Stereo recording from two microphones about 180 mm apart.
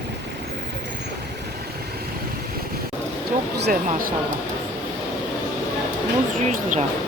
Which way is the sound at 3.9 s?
50° right (ahead or behind).